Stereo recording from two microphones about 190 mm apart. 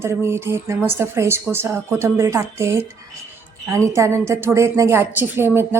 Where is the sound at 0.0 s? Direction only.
15° right (ahead or behind).